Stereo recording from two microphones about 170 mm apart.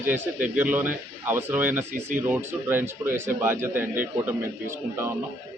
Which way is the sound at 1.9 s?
45° right (ahead or behind).